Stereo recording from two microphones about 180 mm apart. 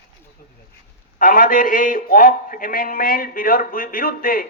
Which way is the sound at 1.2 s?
50° left (ahead or behind).